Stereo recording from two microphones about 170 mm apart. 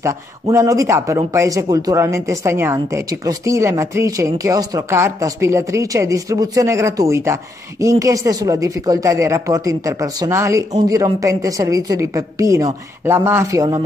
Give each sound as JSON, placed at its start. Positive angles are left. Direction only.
{"t": 0.0, "sound": "speech", "side_deg": -15}